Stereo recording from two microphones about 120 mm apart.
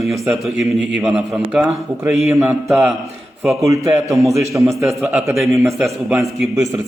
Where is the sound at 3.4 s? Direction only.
25° right (ahead or behind).